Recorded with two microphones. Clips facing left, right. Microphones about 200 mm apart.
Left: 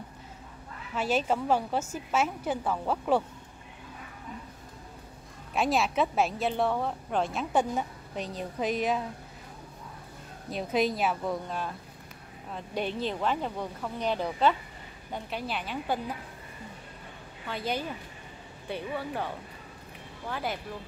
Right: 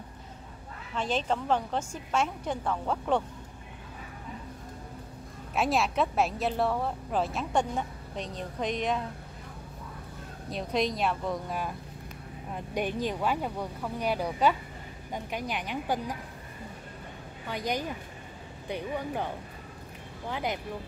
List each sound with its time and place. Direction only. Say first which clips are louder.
0.9 s a woman's voice: left 2 dB; 5° left (ahead or behind)
5.5 s speech: even; centre (ahead or behind)
10.5 s speech: left 2 dB; 5° left (ahead or behind)
11.4 s speech: right 1 dB; 10° right (ahead or behind)
17.5 s speech: right 1 dB; 15° right (ahead or behind)